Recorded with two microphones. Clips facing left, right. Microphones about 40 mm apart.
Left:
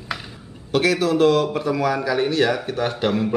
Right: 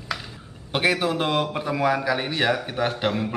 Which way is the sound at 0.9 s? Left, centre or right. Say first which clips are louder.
Left 6 dB; centre.